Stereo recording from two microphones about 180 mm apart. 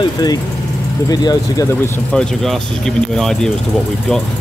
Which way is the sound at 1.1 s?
20° left (ahead or behind).